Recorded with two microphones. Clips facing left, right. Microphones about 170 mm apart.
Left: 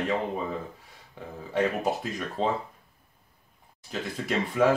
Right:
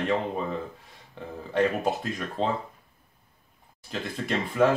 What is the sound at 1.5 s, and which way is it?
Speech, 5° left (ahead or behind).